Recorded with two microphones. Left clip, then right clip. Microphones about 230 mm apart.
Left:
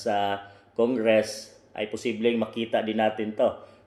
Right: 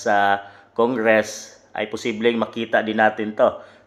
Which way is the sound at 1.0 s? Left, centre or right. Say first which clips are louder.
Right 5 dB; right.